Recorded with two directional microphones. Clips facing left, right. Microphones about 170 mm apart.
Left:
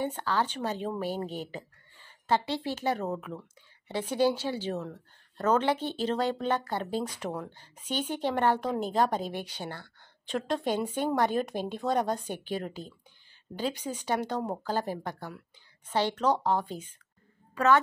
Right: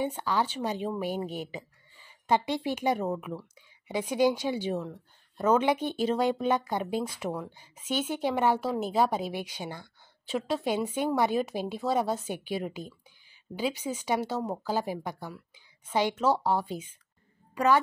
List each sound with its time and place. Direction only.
0.0 s speech: 10° right (ahead or behind)